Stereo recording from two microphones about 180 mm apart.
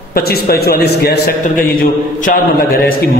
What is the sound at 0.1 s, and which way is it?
A man's voice, 60° left (ahead or behind).